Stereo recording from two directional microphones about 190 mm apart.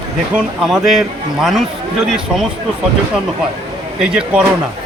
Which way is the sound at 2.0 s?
5° right (ahead or behind).